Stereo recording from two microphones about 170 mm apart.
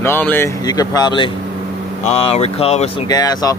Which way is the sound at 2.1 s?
40° left (ahead or behind).